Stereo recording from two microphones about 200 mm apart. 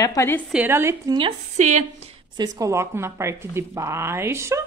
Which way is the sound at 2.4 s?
15° right (ahead or behind).